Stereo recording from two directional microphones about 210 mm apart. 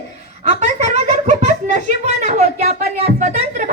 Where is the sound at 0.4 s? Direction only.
30° right (ahead or behind).